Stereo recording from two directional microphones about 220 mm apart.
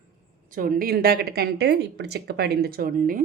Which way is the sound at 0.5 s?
40° right (ahead or behind).